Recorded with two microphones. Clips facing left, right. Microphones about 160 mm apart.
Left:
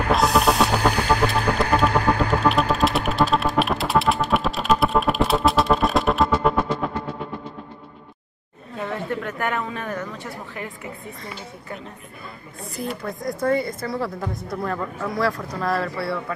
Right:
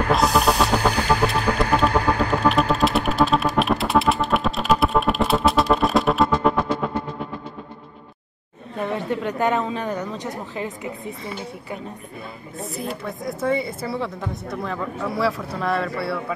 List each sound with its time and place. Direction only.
0.1 s music: centre (ahead or behind)
8.8 s speech: 20° right (ahead or behind)
12.7 s speech: centre (ahead or behind)